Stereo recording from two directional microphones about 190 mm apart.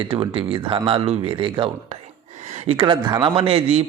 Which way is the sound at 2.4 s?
35° right (ahead or behind).